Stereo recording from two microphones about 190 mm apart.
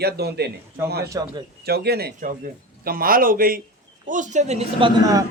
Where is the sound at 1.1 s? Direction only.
20° right (ahead or behind).